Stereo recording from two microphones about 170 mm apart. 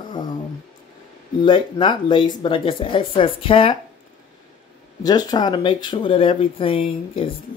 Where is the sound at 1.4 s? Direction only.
30° left (ahead or behind).